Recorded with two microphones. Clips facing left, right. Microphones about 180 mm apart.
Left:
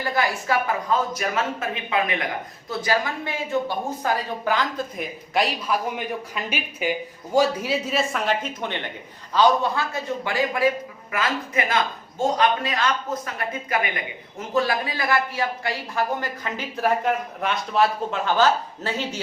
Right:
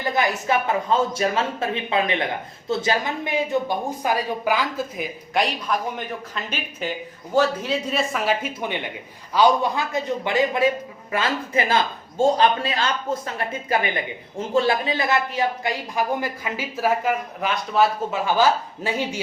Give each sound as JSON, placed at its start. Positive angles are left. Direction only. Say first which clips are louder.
{"t": 0.0, "sound": "a man's voice", "louder": "right 2 dB", "side_deg": -20}